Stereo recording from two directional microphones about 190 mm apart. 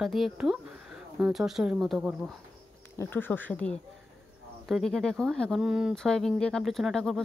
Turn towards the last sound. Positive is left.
turn(degrees=0)  # may be behind; listen again after turning